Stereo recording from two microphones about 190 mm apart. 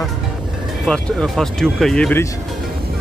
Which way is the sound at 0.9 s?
5° left (ahead or behind).